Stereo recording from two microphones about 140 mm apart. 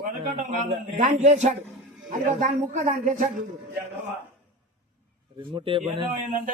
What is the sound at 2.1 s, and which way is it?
A man's voice, 70° right (ahead or behind).